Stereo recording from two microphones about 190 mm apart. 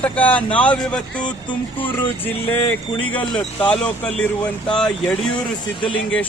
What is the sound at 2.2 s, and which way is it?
Speech, 10° left (ahead or behind).